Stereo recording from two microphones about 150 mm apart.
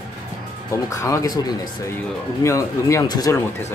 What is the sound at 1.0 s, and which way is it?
Speech, 20° left (ahead or behind).